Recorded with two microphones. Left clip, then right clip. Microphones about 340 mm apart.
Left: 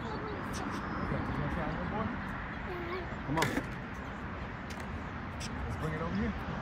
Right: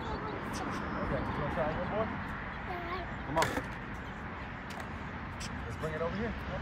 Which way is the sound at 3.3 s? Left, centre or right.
Centre.